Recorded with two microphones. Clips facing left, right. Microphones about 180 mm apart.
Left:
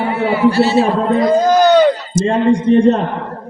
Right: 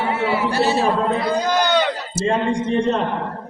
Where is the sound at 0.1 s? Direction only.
55° left (ahead or behind).